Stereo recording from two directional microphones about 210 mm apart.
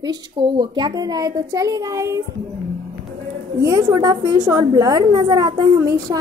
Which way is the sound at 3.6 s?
15° right (ahead or behind).